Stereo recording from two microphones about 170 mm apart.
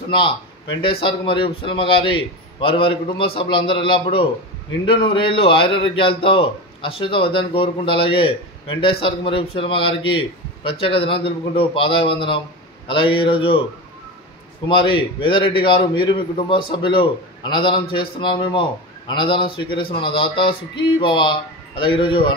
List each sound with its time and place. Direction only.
0.1 s a man's voice: 30° left (ahead or behind)
14.7 s a man's voice: 30° left (ahead or behind)